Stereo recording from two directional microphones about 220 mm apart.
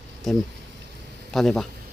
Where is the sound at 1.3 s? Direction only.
Centre (ahead or behind).